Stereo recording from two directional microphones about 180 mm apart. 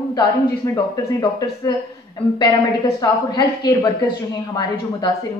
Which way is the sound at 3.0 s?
20° left (ahead or behind).